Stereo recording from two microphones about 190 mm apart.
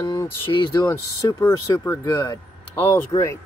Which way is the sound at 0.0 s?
20° left (ahead or behind).